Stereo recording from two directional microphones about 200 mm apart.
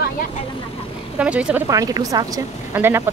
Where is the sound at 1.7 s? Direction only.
15° right (ahead or behind).